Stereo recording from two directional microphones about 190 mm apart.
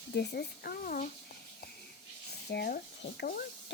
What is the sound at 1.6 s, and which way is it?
Wheeze, 55° left (ahead or behind).